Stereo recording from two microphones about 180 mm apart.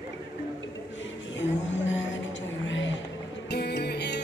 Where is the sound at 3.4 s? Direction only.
65° left (ahead or behind).